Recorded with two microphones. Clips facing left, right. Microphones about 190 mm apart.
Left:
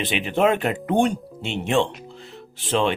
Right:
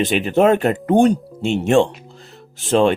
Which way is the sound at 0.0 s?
45° right (ahead or behind).